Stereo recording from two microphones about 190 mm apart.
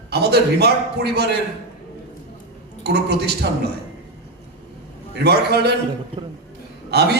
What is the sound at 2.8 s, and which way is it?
Speech, 60° right (ahead or behind).